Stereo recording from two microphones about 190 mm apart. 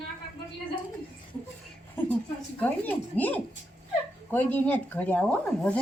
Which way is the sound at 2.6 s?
10° left (ahead or behind).